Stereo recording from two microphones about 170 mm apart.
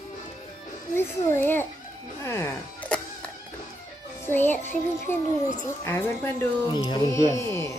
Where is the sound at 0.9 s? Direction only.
15° left (ahead or behind).